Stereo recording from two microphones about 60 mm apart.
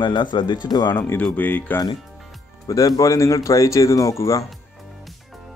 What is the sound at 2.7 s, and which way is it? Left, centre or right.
Speech, left.